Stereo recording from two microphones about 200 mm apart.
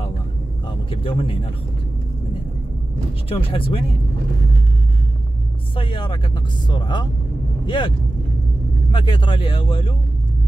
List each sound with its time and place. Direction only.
0.8 s speech: 25° left (ahead or behind)
3.3 s speech: 30° left (ahead or behind)
5.8 s speech: 25° left (ahead or behind)
8.9 s speech: 25° left (ahead or behind)